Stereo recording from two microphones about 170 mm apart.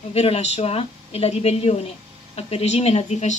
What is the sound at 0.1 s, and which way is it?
A woman's voice, 35° left (ahead or behind).